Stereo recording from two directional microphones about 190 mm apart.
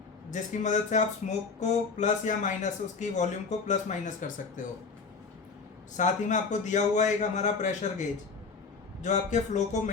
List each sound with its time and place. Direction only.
0.3 s a man's voice: 40° left (ahead or behind)
6.0 s a man's voice: 40° left (ahead or behind)